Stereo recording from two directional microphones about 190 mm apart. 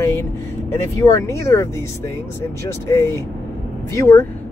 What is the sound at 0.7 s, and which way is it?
Speech, 15° left (ahead or behind).